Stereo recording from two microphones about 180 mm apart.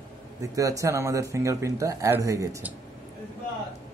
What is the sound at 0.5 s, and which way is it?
Speech, 20° right (ahead or behind).